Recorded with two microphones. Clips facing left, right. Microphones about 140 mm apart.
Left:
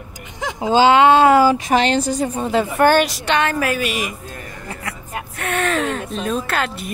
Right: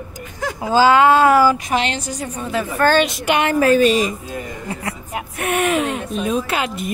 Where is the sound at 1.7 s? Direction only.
35° left (ahead or behind).